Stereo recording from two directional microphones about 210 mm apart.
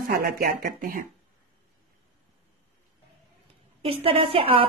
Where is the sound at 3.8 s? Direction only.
25° right (ahead or behind).